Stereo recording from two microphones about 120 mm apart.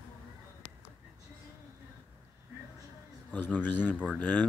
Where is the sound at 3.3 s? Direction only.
15° left (ahead or behind).